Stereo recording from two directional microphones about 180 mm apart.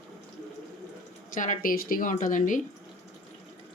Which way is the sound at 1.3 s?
45° left (ahead or behind).